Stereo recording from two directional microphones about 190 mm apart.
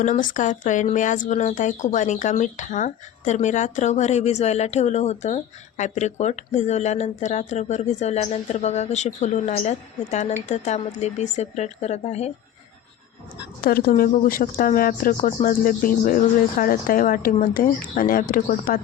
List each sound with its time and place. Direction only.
0.0 s speech: 45° left (ahead or behind)
13.6 s speech: 50° left (ahead or behind)